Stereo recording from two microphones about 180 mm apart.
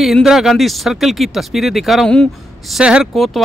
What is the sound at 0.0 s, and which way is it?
A man's voice, centre (ahead or behind).